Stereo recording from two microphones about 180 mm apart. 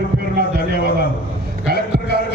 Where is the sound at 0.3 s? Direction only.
60° right (ahead or behind).